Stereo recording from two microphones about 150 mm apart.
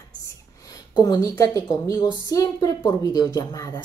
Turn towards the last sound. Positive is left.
turn(degrees=25)  # may be behind; listen again after turning